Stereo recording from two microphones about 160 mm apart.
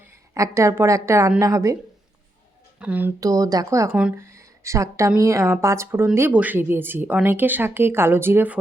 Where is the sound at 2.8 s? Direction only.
10° right (ahead or behind).